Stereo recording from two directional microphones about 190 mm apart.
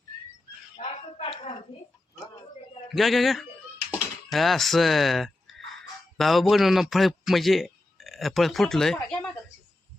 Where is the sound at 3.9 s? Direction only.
Centre (ahead or behind).